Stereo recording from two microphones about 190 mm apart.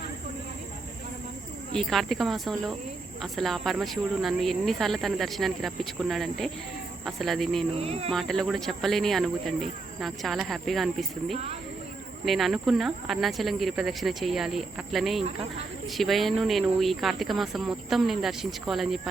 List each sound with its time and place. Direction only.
1.7 s speech: centre (ahead or behind)
7.7 s speech: 30° right (ahead or behind)
8.1 s speech: centre (ahead or behind)